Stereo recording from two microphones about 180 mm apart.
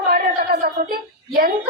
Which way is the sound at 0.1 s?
55° right (ahead or behind).